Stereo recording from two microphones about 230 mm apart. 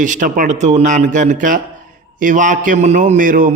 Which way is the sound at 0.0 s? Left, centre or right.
Right.